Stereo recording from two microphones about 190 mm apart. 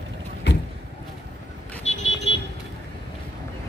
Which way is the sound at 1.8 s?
35° left (ahead or behind).